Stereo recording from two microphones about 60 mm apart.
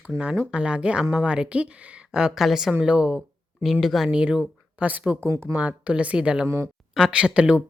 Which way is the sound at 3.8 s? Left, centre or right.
Centre.